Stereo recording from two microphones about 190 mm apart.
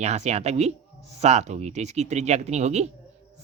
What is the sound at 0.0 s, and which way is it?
Speech, 35° right (ahead or behind).